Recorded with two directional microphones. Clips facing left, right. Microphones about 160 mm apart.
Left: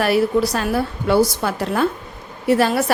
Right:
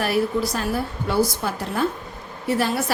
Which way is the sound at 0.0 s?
75° left (ahead or behind).